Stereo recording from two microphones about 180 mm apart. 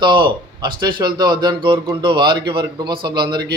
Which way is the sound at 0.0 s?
25° right (ahead or behind).